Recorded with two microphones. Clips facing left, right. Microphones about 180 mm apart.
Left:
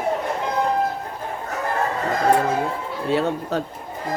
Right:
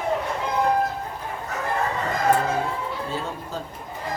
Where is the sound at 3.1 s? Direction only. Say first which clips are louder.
Left 9 dB; 70° left (ahead or behind).